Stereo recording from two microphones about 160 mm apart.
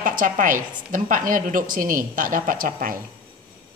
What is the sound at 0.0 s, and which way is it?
A woman's voice, 60° right (ahead or behind).